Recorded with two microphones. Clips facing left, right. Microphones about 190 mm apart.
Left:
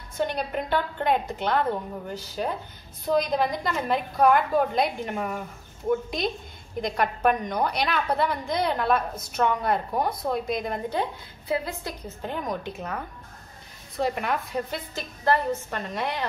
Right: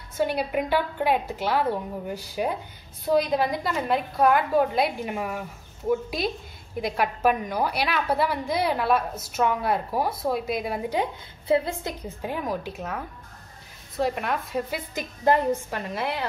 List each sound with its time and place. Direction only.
0.2 s a woman's voice: 10° right (ahead or behind)
11.4 s a woman's voice: 25° right (ahead or behind)
12.2 s a woman's voice: 5° right (ahead or behind)
15.0 s a woman's voice: 15° right (ahead or behind)
15.7 s a woman's voice: 5° right (ahead or behind)